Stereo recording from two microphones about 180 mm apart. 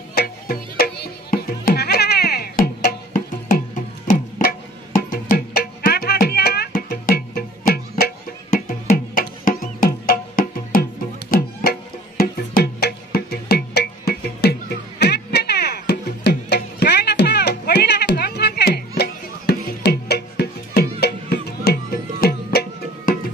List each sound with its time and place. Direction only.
0.1 s music: 60° left (ahead or behind)